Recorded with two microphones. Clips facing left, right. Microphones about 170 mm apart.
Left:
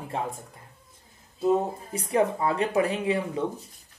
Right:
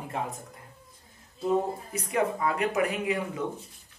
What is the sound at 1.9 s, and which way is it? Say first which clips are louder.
Speech: left 4 dB; 30° left (ahead or behind).